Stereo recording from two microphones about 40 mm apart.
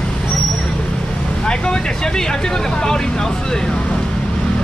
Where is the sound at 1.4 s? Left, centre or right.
Left.